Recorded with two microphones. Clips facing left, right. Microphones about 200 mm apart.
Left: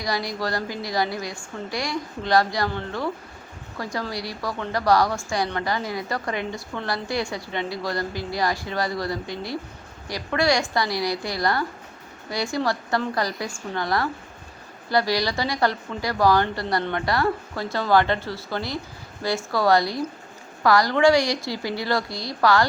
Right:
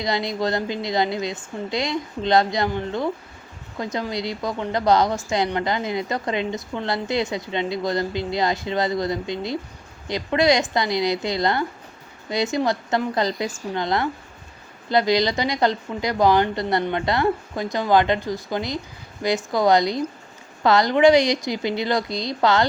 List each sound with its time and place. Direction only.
0.0 s a woman's voice: 20° right (ahead or behind)